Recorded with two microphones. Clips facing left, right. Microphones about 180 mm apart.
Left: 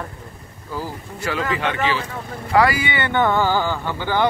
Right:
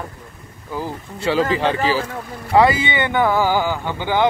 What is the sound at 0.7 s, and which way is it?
Speech, 25° right (ahead or behind).